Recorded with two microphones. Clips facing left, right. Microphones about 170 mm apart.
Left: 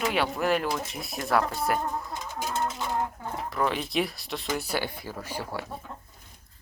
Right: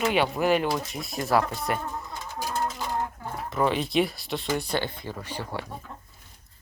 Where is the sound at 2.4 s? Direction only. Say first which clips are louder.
Right 1 dB; 20° left (ahead or behind).